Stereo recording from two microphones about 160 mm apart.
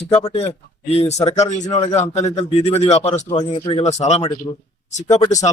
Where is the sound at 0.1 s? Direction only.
40° left (ahead or behind).